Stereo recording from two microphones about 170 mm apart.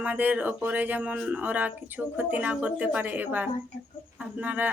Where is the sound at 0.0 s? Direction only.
10° right (ahead or behind).